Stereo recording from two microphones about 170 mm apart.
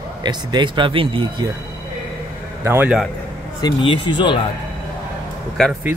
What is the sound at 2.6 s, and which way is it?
Speech, 10° right (ahead or behind).